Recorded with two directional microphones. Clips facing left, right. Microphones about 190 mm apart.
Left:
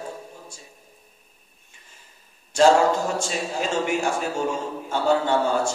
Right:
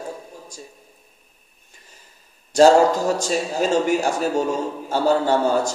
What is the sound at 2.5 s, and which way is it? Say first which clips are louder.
A man's voice: right 4 dB; 40° right (ahead or behind).